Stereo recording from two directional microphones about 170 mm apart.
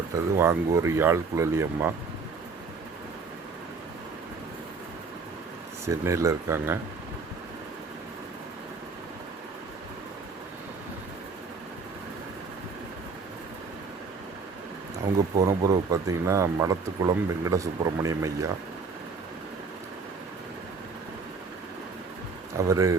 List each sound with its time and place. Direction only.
0.3 s speech: 15° right (ahead or behind)
5.8 s speech: 15° right (ahead or behind)
15.4 s speech: 20° right (ahead or behind)
22.5 s speech: 20° right (ahead or behind)